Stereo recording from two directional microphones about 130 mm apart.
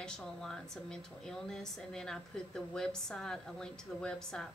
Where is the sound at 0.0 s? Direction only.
5° left (ahead or behind).